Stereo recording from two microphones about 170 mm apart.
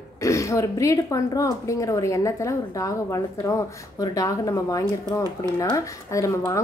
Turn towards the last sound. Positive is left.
turn(degrees=20)  # may be behind; listen again after turning